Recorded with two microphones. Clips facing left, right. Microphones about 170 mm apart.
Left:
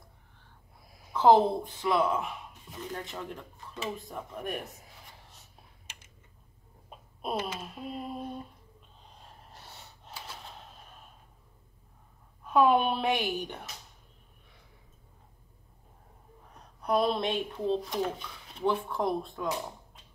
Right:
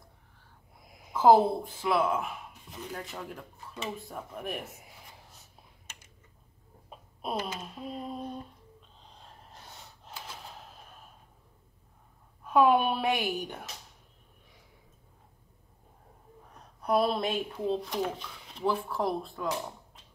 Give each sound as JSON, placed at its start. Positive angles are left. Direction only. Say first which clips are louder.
{"t": 0.7, "sound": "a sound", "louder": "right 3 dB", "side_deg": -20}
{"t": 1.1, "sound": "a woman's voice", "louder": "even", "side_deg": -5}
{"t": 6.9, "sound": "a sound", "louder": "left 1 dB", "side_deg": 0}
{"t": 7.5, "sound": "speech", "louder": "even", "side_deg": 5}
{"t": 9.1, "sound": "gasp", "louder": "even", "side_deg": 5}
{"t": 12.4, "sound": "speech", "louder": "even", "side_deg": -10}
{"t": 16.5, "sound": "speech", "louder": "right 1 dB", "side_deg": -5}